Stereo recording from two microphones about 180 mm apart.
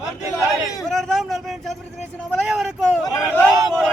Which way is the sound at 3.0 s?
20° left (ahead or behind).